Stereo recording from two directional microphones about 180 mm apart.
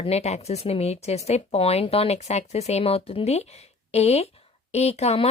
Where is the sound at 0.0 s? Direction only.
35° left (ahead or behind).